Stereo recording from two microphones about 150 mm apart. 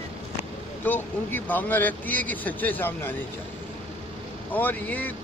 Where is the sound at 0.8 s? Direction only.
10° left (ahead or behind).